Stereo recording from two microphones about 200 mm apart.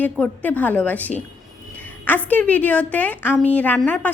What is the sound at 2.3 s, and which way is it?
A woman's voice, 5° left (ahead or behind).